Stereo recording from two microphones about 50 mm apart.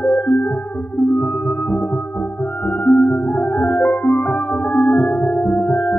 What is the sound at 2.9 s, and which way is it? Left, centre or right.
Music, left.